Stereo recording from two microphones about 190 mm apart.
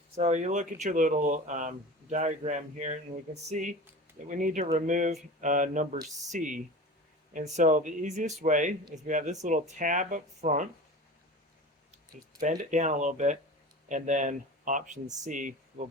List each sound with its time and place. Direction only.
0.2 s speech: 35° right (ahead or behind)
12.4 s speech: 40° right (ahead or behind)